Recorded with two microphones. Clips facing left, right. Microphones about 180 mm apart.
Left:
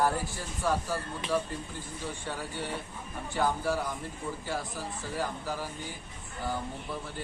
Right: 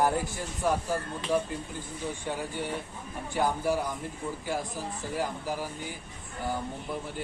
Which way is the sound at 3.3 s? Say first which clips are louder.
Right 2 dB; 15° right (ahead or behind).